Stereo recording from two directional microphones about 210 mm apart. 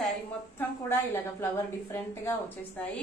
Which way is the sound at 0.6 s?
10° left (ahead or behind).